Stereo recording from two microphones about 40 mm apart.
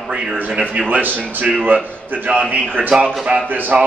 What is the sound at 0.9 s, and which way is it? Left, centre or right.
Speech, right.